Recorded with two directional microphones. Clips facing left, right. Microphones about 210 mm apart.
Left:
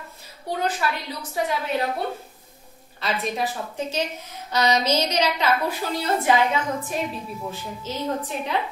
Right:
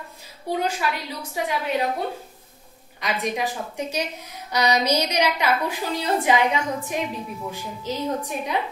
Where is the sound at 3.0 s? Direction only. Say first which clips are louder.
Even; 15° right (ahead or behind).